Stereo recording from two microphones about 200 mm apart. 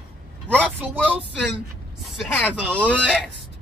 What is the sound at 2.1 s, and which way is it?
Speech, 5° left (ahead or behind).